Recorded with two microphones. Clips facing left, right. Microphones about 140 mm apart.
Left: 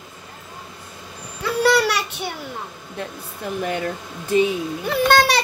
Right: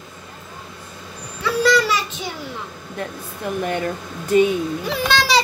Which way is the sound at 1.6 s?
70° left (ahead or behind).